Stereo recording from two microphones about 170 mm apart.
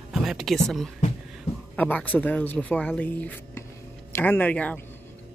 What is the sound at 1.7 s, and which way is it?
Speech, 10° left (ahead or behind).